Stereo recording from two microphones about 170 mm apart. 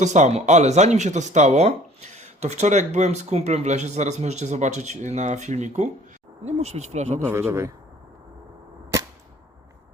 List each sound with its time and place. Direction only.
0.0 s speech: 45° right (ahead or behind)
7.2 s speech: 15° right (ahead or behind)